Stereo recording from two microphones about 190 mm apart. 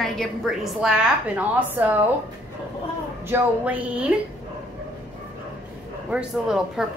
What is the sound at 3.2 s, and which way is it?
Speech, 10° right (ahead or behind).